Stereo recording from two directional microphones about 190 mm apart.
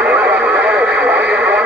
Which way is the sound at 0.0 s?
5° right (ahead or behind).